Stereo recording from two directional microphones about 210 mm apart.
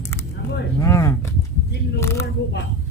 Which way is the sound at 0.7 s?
15° left (ahead or behind).